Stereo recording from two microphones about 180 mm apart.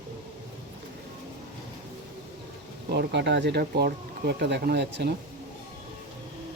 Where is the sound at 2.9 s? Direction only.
70° right (ahead or behind).